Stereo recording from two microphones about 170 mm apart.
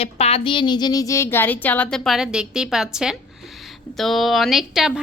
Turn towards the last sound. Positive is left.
turn(degrees=0)  # may be behind; listen again after turning